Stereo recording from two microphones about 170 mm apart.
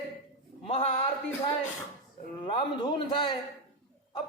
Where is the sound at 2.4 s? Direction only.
30° left (ahead or behind).